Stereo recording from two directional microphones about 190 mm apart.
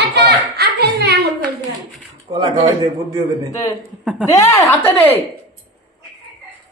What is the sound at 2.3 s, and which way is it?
Speech, 25° right (ahead or behind).